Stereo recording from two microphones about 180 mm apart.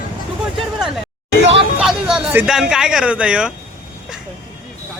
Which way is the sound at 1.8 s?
5° right (ahead or behind).